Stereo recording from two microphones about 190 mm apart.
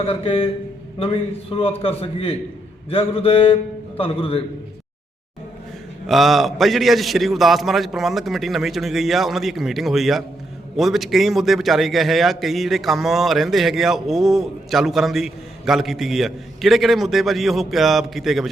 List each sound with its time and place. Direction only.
0.0 s a man's voice: 30° left (ahead or behind)
6.1 s a man's voice: centre (ahead or behind)